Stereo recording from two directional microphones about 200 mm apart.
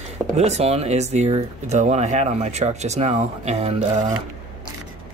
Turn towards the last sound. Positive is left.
turn(degrees=-35)  # may be behind; listen again after turning